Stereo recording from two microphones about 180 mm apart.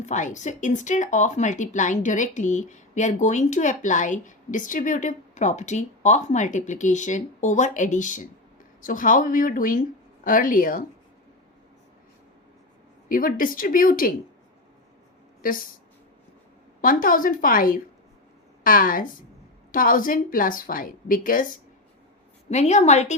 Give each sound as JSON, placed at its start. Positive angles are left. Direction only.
{"t": 0.0, "sound": "speech", "side_deg": 40}
{"t": 13.1, "sound": "speech", "side_deg": 50}
{"t": 15.4, "sound": "speech", "side_deg": 50}
{"t": 16.8, "sound": "speech", "side_deg": 50}
{"t": 22.4, "sound": "a woman's voice", "side_deg": 40}